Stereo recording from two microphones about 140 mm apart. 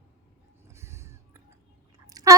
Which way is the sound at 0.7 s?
20° right (ahead or behind).